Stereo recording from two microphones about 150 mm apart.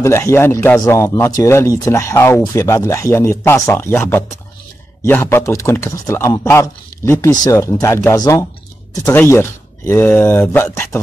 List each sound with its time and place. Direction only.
0.0 s speech: 20° left (ahead or behind)